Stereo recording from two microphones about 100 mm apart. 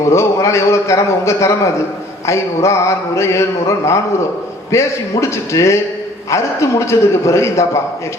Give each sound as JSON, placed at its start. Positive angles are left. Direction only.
{"t": 0.1, "sound": "mantra", "side_deg": 30}